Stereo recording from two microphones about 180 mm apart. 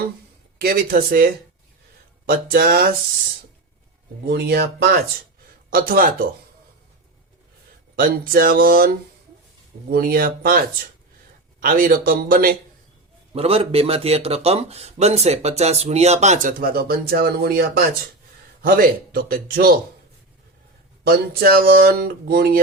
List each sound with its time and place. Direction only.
0.6 s speech: 55° right (ahead or behind)
4.3 s speech: 65° right (ahead or behind)
7.9 s speech: 55° right (ahead or behind)
9.9 s speech: 55° right (ahead or behind)
11.6 s speech: 50° right (ahead or behind)
13.3 s a man's voice: 35° right (ahead or behind); by 19.7 s 55° right (ahead or behind)
21.0 s speech: 60° right (ahead or behind)